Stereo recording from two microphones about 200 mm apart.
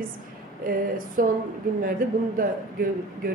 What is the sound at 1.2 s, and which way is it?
Speech, 45° right (ahead or behind).